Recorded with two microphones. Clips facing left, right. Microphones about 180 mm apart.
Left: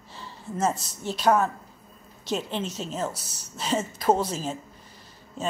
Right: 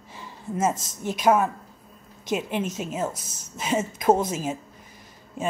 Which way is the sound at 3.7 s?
10° right (ahead or behind).